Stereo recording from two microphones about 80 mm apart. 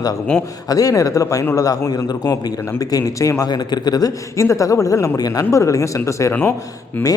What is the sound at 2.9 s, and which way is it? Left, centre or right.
Speech, left.